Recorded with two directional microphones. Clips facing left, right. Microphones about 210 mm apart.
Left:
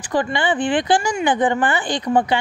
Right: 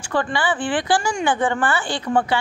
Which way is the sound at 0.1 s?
20° left (ahead or behind).